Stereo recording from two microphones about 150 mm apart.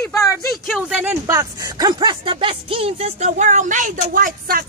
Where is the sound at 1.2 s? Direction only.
25° right (ahead or behind).